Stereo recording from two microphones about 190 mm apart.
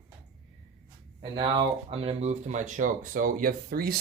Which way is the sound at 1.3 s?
25° right (ahead or behind).